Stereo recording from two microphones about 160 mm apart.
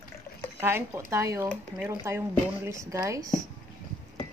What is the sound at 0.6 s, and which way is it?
A woman's voice, 15° right (ahead or behind).